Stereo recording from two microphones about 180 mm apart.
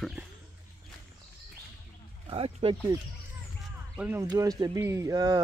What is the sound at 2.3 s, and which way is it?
Wild animals, 30° right (ahead or behind).